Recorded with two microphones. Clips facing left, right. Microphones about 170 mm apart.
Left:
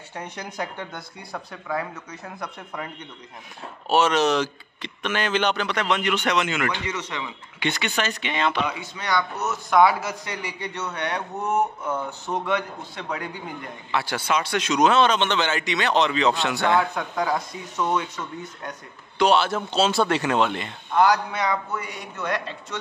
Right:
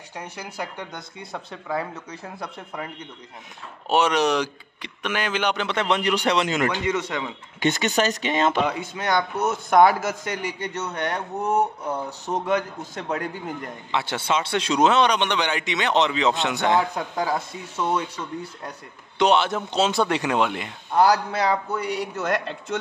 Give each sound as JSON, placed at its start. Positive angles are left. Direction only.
{"t": 0.1, "sound": "speech", "side_deg": -10}
{"t": 3.9, "sound": "a man's voice", "side_deg": -15}
{"t": 5.7, "sound": "a man's voice", "side_deg": -30}
{"t": 13.9, "sound": "speech", "side_deg": -25}
{"t": 14.9, "sound": "a man's voice", "side_deg": -15}
{"t": 19.1, "sound": "a man's voice", "side_deg": -20}
{"t": 20.9, "sound": "a man's voice", "side_deg": -35}